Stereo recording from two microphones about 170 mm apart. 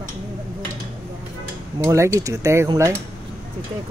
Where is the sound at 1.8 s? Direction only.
20° right (ahead or behind).